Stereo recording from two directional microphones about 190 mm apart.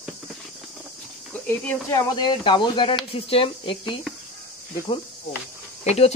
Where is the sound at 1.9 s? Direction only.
20° left (ahead or behind).